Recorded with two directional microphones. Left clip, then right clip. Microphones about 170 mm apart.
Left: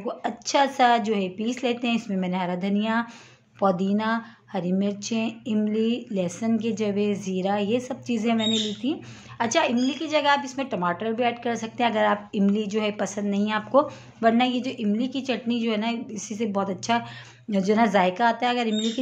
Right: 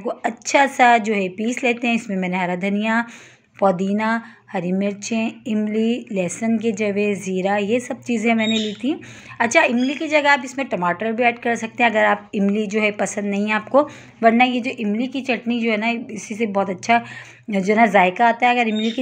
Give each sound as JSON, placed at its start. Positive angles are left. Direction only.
{"t": 0.2, "sound": "a woman's voice", "side_deg": -20}
{"t": 16.5, "sound": "a woman's voice", "side_deg": -25}